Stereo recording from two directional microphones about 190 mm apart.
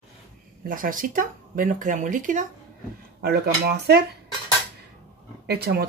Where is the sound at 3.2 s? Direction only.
55° right (ahead or behind).